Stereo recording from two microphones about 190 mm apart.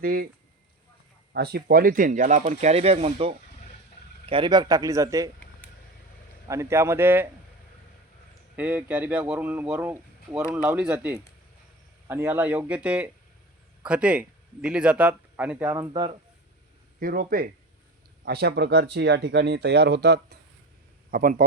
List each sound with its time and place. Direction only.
0.0 s speech: 50° right (ahead or behind)
1.3 s a man's voice: 55° right (ahead or behind); by 5.3 s 15° right (ahead or behind)
6.5 s speech: 15° right (ahead or behind)
8.5 s speech: 10° right (ahead or behind)
15.9 s a man's voice: 25° right (ahead or behind)
17.0 s speech: 50° right (ahead or behind)
21.1 s speech: 50° right (ahead or behind)